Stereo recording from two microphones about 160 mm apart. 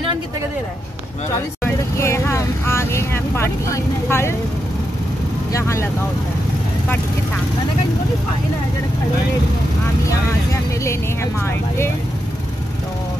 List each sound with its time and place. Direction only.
1.6 s vehicle: 15° left (ahead or behind)
5.5 s speech: 15° left (ahead or behind)
10.0 s vehicle: 20° left (ahead or behind)